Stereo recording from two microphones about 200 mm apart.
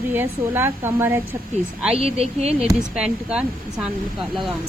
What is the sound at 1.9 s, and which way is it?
Speech, 30° right (ahead or behind).